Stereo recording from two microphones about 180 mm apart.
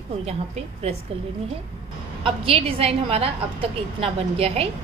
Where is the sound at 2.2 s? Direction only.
30° right (ahead or behind).